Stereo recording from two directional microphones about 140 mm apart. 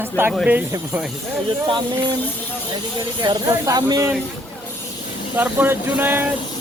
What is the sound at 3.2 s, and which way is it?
Speech, 25° right (ahead or behind).